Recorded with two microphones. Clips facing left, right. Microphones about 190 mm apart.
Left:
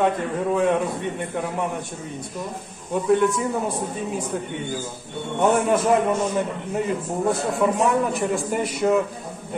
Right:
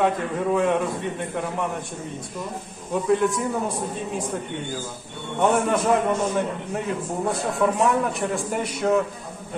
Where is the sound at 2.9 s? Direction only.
Centre (ahead or behind).